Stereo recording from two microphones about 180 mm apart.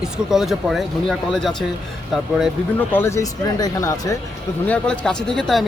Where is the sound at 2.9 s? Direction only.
15° left (ahead or behind).